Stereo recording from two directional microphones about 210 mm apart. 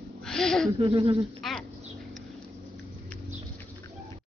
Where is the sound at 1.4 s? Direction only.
Centre (ahead or behind).